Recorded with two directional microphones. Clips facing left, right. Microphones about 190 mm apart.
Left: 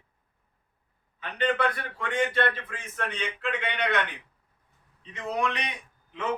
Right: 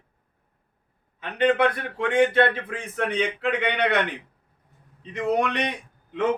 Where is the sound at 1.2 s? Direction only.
55° right (ahead or behind).